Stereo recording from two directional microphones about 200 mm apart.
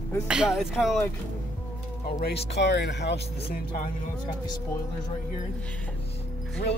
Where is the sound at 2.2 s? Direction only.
55° left (ahead or behind).